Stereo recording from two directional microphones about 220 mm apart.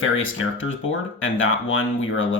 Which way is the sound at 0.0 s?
60° left (ahead or behind).